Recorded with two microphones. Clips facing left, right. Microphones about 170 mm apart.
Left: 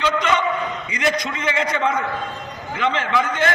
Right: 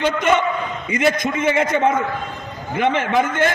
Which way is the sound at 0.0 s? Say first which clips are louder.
Right 3 dB; 50° right (ahead or behind).